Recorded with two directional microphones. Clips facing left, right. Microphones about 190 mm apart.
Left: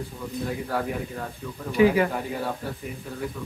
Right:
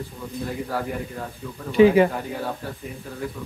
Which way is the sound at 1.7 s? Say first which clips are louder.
Right 5 dB; 25° right (ahead or behind).